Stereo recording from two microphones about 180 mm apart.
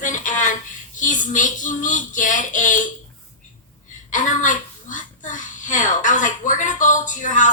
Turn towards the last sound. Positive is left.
turn(degrees=45)  # may be behind; listen again after turning